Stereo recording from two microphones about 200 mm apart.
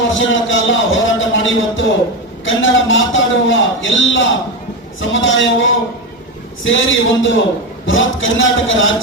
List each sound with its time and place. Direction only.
0.1 s a man's voice: 70° left (ahead or behind)
6.7 s a man's voice: 70° left (ahead or behind)